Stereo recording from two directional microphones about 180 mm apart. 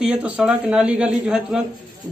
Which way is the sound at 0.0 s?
5° right (ahead or behind).